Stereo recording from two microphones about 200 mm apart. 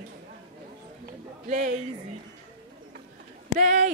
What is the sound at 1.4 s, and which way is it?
Female singing, 35° right (ahead or behind).